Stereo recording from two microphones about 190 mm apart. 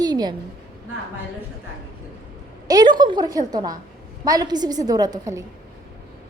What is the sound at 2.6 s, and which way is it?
A woman's voice, 20° right (ahead or behind).